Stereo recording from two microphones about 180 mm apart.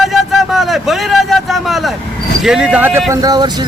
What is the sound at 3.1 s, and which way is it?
Speech, 20° right (ahead or behind).